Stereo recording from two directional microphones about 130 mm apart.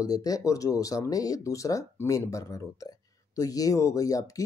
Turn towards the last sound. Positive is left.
turn(degrees=25)  # may be behind; listen again after turning